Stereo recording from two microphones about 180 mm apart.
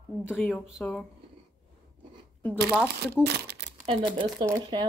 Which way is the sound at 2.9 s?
65° right (ahead or behind).